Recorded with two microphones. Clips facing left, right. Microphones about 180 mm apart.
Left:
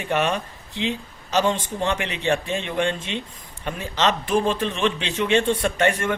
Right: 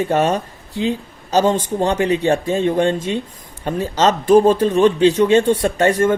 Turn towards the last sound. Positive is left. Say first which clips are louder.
# right 6 dB
turn(degrees=-35)  # may be behind; listen again after turning